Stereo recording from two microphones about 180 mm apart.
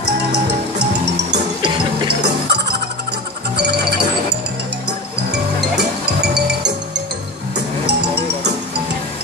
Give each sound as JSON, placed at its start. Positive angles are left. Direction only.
{"t": 0.0, "sound": "music", "side_deg": -70}